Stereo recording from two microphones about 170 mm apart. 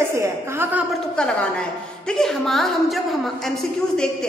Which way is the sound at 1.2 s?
5° left (ahead or behind).